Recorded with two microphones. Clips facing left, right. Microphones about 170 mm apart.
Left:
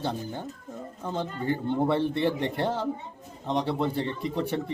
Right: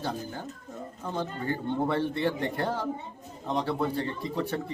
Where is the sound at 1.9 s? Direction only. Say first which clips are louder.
Left 2 dB; 25° left (ahead or behind).